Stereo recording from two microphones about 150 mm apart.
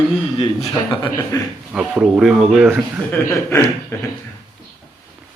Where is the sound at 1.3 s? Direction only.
20° left (ahead or behind).